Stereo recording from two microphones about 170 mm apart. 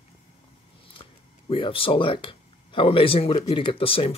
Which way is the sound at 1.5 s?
30° left (ahead or behind).